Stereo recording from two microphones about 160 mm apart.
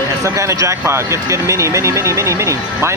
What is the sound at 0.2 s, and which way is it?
Speech, 20° right (ahead or behind).